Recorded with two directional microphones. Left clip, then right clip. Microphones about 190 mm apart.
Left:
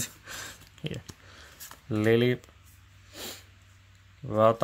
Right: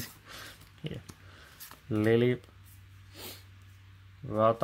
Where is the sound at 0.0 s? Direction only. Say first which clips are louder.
Left 6 dB; 20° left (ahead or behind).